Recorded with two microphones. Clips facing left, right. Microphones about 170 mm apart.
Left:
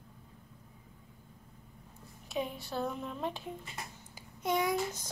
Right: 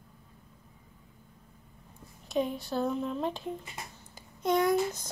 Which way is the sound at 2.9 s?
Centre (ahead or behind).